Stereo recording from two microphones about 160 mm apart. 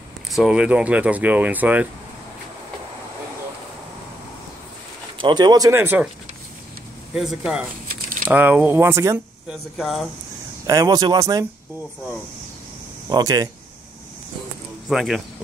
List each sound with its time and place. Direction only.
0.3 s speech: 5° right (ahead or behind)
5.2 s speech: 25° right (ahead or behind)
7.2 s speech: 5° right (ahead or behind)
7.9 s a sound: 60° right (ahead or behind)
8.3 s speech: 10° right (ahead or behind)
9.5 s speech: centre (ahead or behind)
10.7 s speech: 25° right (ahead or behind)
13.1 s speech: 25° right (ahead or behind)
14.9 s speech: centre (ahead or behind)